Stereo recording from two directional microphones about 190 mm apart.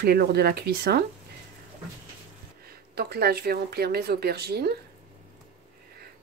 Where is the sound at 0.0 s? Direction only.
55° right (ahead or behind).